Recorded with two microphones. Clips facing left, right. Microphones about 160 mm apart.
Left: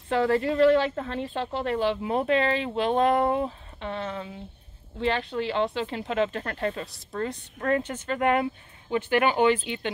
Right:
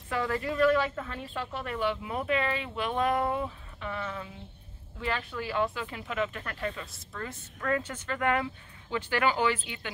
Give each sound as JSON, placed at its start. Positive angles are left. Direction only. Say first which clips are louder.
{"t": 0.1, "sound": "speech", "louder": "left 7 dB", "side_deg": 25}